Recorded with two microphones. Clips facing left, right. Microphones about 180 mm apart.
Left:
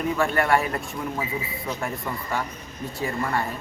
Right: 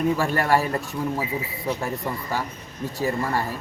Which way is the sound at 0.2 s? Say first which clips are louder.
Even; 35° right (ahead or behind).